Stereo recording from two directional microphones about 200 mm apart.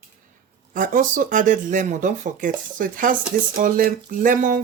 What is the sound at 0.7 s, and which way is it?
Speech, 40° right (ahead or behind).